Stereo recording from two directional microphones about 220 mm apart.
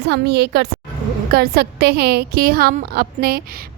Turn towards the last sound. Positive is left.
turn(degrees=-45)  # may be behind; listen again after turning